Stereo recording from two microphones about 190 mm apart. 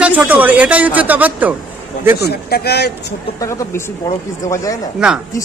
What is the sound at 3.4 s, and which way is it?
Speech, 15° left (ahead or behind).